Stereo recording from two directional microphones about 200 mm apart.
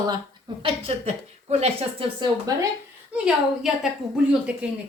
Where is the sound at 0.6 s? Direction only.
30° right (ahead or behind).